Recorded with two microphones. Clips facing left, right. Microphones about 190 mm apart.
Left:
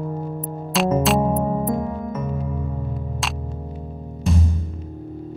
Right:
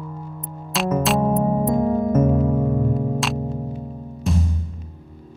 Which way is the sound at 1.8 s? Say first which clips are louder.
Right 9 dB; 45° right (ahead or behind).